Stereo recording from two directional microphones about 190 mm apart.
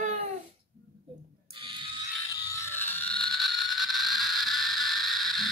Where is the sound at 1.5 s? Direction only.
25° right (ahead or behind).